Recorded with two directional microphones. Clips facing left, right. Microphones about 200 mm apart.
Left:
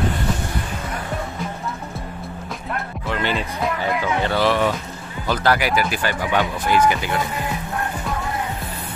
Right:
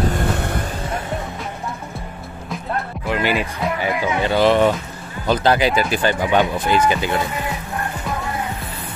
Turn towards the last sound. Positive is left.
turn(degrees=-25)  # may be behind; listen again after turning